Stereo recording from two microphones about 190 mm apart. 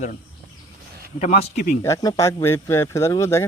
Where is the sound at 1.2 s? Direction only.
40° left (ahead or behind).